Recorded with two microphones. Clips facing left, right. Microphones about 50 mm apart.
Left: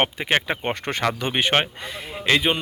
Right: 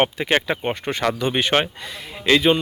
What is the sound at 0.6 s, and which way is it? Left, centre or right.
Speech, left.